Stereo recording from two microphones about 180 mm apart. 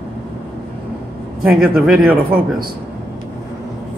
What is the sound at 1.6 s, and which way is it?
Speech, 5° right (ahead or behind).